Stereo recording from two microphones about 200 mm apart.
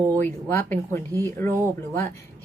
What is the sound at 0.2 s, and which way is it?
A woman's voice, 10° left (ahead or behind).